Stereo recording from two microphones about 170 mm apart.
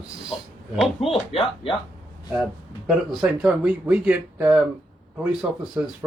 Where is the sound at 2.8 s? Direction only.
5° right (ahead or behind).